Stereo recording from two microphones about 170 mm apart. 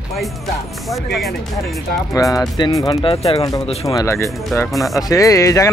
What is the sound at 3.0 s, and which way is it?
Speech, 35° left (ahead or behind).